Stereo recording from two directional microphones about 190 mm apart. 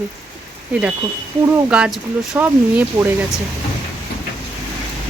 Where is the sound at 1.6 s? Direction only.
5° right (ahead or behind).